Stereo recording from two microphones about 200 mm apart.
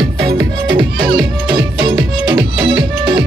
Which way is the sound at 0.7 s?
25° right (ahead or behind).